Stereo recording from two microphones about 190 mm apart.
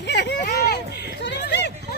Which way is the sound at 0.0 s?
60° left (ahead or behind).